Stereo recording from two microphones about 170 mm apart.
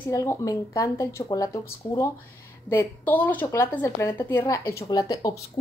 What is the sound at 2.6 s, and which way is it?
A woman's voice, 10° left (ahead or behind).